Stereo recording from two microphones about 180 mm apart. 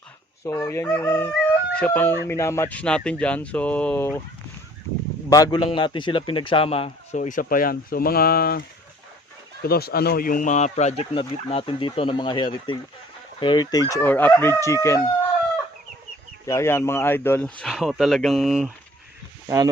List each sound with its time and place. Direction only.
0.4 s speech: 15° left (ahead or behind)
5.3 s a man's voice: 20° left (ahead or behind); by 8.6 s 55° left (ahead or behind)
9.6 s a man's voice: 60° left (ahead or behind); by 15.1 s 15° left (ahead or behind)
16.5 s speech: 15° left (ahead or behind); by 18.7 s centre (ahead or behind)
19.5 s speech: 20° right (ahead or behind)